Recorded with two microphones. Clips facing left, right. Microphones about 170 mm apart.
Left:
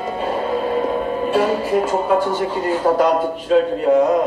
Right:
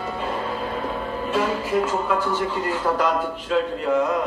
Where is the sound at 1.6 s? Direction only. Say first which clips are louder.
Left 4 dB; 30° left (ahead or behind).